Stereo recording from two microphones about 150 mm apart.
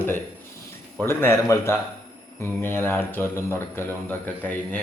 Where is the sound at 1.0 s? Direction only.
15° left (ahead or behind).